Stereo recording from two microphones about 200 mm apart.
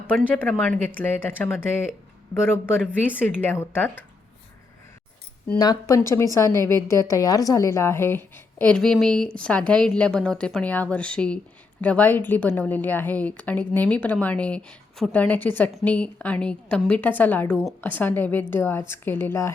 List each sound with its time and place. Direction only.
0.1 s a woman's voice: 5° left (ahead or behind)
5.5 s a woman's voice: 15° left (ahead or behind)